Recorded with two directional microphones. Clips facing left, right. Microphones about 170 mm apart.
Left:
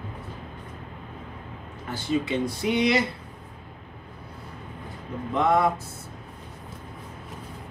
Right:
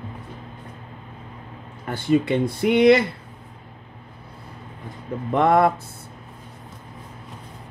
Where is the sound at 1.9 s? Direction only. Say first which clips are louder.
Right 6 dB; 55° right (ahead or behind).